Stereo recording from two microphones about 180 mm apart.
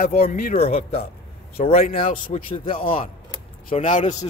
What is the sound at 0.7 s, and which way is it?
Speech, 35° left (ahead or behind).